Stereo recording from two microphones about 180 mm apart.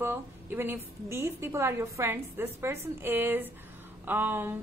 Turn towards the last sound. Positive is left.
turn(degrees=-10)  # may be behind; listen again after turning